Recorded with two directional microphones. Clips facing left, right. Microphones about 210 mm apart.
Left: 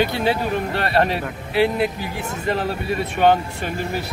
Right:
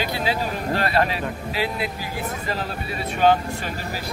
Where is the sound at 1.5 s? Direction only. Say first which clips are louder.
Left 10 dB; 60° left (ahead or behind).